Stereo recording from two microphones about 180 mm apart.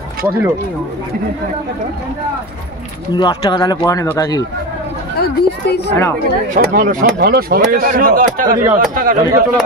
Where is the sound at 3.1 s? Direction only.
25° left (ahead or behind).